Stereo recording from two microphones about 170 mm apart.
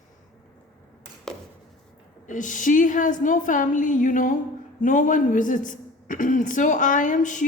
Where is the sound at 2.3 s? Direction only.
50° left (ahead or behind).